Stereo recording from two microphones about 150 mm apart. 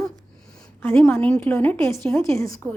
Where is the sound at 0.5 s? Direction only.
5° left (ahead or behind).